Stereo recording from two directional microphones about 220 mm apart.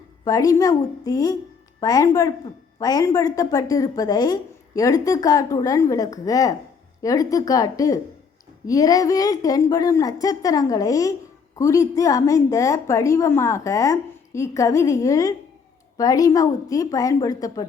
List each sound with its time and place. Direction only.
0.3 s a woman's voice: 15° left (ahead or behind)